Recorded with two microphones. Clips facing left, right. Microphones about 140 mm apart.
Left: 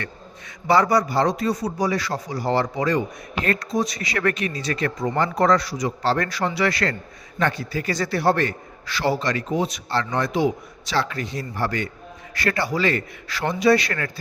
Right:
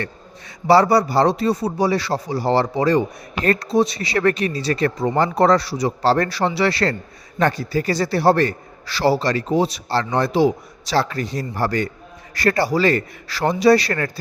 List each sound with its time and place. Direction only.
0.7 s a man's voice: 35° right (ahead or behind)